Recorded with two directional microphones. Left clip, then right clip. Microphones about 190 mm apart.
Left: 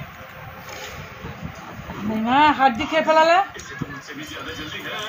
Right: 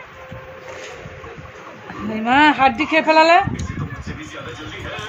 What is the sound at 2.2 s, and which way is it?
Speech, 40° right (ahead or behind).